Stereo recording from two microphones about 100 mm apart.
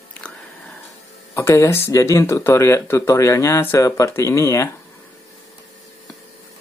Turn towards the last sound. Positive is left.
turn(degrees=30)  # may be behind; listen again after turning